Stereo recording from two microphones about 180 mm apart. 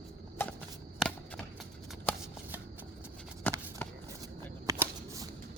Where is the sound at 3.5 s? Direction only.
10° left (ahead or behind).